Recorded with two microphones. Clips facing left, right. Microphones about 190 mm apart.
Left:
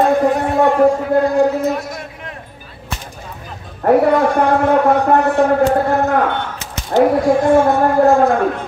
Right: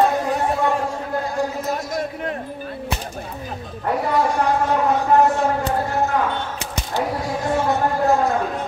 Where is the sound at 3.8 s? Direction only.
60° left (ahead or behind).